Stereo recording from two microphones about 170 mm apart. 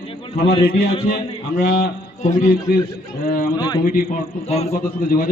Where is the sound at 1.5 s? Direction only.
65° left (ahead or behind).